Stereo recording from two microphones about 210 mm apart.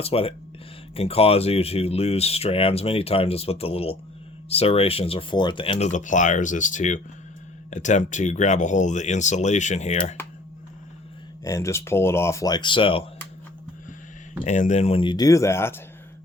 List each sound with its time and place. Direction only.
0.0 s speech: 25° left (ahead or behind)
11.4 s speech: 15° left (ahead or behind)
14.4 s speech: 35° left (ahead or behind); by 15.8 s 10° left (ahead or behind)